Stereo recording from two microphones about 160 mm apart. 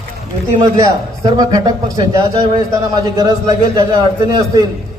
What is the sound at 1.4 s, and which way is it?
A man's voice, 25° right (ahead or behind).